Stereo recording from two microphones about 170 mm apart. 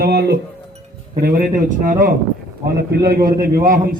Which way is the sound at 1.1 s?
60° right (ahead or behind).